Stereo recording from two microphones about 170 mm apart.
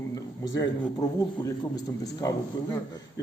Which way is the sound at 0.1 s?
20° left (ahead or behind).